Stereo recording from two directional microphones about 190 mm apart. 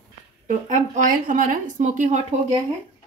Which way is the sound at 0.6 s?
40° right (ahead or behind).